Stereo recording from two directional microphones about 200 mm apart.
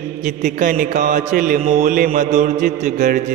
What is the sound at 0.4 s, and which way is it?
Speech, 40° right (ahead or behind).